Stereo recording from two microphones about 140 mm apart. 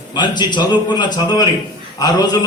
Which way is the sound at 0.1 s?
30° left (ahead or behind).